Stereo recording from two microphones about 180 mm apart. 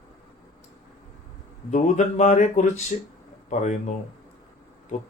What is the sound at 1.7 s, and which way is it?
Speech, 40° left (ahead or behind).